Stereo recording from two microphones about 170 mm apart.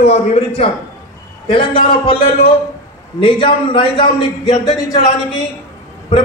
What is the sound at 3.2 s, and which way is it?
A man's voice, 30° left (ahead or behind).